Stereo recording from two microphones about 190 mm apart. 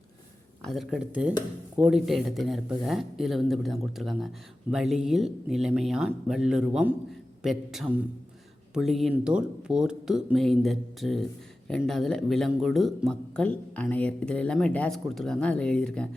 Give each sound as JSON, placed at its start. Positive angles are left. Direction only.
{"t": 0.6, "sound": "speech", "side_deg": 0}